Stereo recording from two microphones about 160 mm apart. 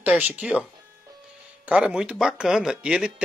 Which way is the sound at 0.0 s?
10° right (ahead or behind).